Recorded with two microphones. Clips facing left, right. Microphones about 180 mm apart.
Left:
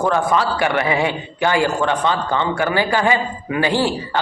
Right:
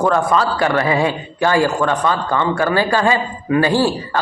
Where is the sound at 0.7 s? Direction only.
20° left (ahead or behind).